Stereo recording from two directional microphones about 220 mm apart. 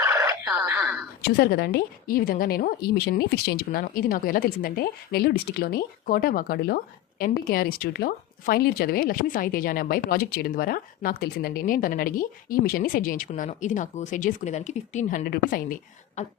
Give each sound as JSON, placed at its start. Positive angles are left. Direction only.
{"t": 0.0, "sound": "radio", "side_deg": -10}
{"t": 1.3, "sound": "a woman's voice", "side_deg": 45}